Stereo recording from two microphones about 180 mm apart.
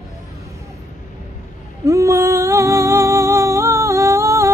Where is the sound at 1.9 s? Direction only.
15° right (ahead or behind).